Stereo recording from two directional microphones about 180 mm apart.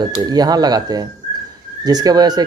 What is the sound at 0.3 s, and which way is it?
Speech, 20° right (ahead or behind).